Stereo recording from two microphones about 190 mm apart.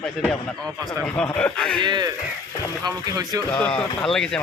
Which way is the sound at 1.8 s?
25° right (ahead or behind).